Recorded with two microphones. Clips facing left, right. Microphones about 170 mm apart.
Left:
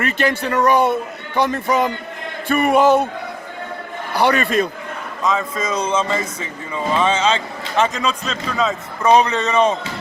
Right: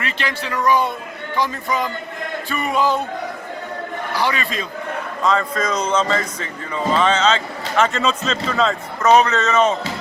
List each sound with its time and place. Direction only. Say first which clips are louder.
0.0 s speech: left 6 dB; 50° left (ahead or behind)
4.2 s speech: left 8 dB; 60° left (ahead or behind)
5.2 s speech: right 1 dB; 5° left (ahead or behind)
8.0 s speech: right 2 dB; centre (ahead or behind)